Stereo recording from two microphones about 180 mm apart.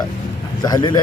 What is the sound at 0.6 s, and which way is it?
Speech, 25° left (ahead or behind).